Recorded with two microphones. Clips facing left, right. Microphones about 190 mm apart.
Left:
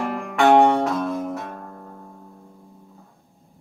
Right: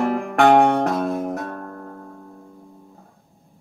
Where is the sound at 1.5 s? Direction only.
60° right (ahead or behind).